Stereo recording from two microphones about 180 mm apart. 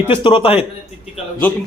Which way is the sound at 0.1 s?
30° left (ahead or behind).